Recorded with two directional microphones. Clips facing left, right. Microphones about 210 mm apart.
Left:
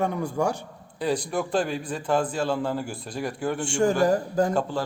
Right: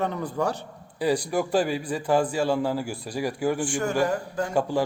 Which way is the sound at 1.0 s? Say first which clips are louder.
Right 2 dB; 10° right (ahead or behind).